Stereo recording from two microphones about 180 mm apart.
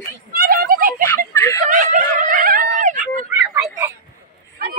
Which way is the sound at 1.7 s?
45° right (ahead or behind).